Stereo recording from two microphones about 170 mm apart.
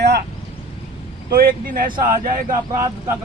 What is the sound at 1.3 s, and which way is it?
Speech, 55° right (ahead or behind).